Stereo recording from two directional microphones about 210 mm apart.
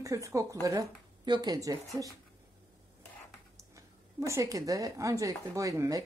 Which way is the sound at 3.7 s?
15° right (ahead or behind).